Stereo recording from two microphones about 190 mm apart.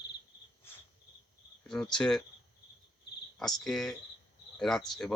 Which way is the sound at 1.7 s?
5° left (ahead or behind).